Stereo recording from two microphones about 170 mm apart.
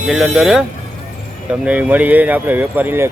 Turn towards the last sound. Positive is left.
turn(degrees=-10)  # may be behind; listen again after turning